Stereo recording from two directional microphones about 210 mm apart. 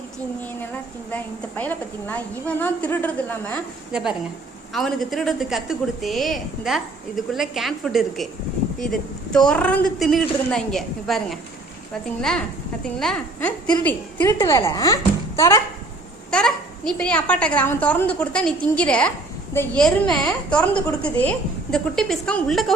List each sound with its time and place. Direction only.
1.1 s a woman's voice: 5° left (ahead or behind)
4.7 s a woman's voice: centre (ahead or behind)